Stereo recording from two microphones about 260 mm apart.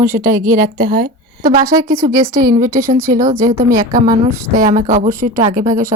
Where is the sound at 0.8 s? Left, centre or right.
Right.